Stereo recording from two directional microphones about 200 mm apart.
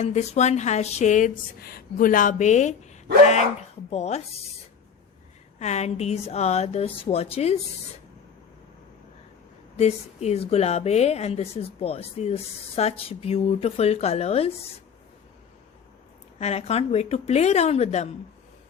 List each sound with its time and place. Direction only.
0.0 s speech: 35° left (ahead or behind)
5.5 s speech: 35° left (ahead or behind)
9.7 s speech: 30° left (ahead or behind)
16.4 s speech: 30° left (ahead or behind)